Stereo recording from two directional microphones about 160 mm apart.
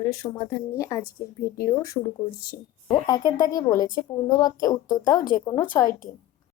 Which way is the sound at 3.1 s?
20° left (ahead or behind).